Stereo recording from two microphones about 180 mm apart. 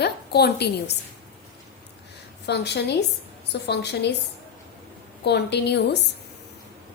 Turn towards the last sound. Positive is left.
turn(degrees=70)  # may be behind; listen again after turning